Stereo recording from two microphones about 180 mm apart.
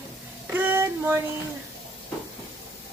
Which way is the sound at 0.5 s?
15° right (ahead or behind).